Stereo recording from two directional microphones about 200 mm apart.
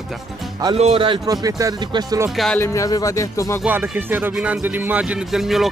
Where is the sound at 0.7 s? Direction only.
30° right (ahead or behind).